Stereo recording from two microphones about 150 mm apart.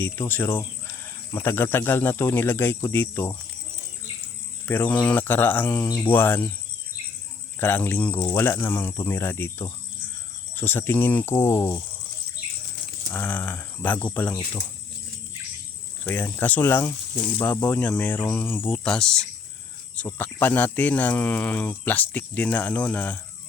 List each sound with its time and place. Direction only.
0.0 s speech: 15° left (ahead or behind)
4.6 s speech: 15° left (ahead or behind)
7.6 s speech: 15° left (ahead or behind)
13.1 s speech: 10° left (ahead or behind)
16.0 s speech: 10° left (ahead or behind)